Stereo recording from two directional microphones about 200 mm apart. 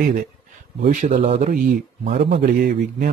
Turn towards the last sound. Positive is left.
turn(degrees=-45)  # may be behind; listen again after turning